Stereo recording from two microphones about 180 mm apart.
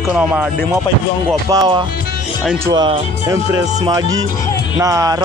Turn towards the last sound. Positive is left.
turn(degrees=-20)  # may be behind; listen again after turning